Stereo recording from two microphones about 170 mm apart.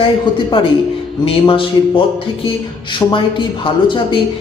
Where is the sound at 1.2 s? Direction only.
30° left (ahead or behind).